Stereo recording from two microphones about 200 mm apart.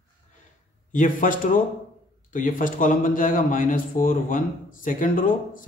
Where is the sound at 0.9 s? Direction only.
40° left (ahead or behind).